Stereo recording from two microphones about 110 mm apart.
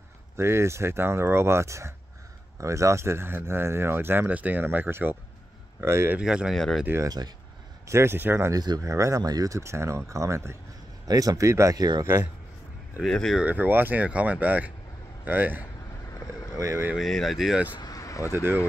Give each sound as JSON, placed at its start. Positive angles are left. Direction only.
{"t": 0.4, "sound": "speech", "side_deg": -25}
{"t": 6.1, "sound": "speech", "side_deg": -5}
{"t": 6.9, "sound": "speech", "side_deg": -20}
{"t": 8.5, "sound": "speech", "side_deg": -35}
{"t": 13.0, "sound": "speech", "side_deg": 5}
{"t": 13.4, "sound": "speech", "side_deg": -15}
{"t": 16.5, "sound": "speech", "side_deg": -30}
{"t": 16.9, "sound": "speech", "side_deg": 0}
{"t": 17.7, "sound": "vehicle", "side_deg": 35}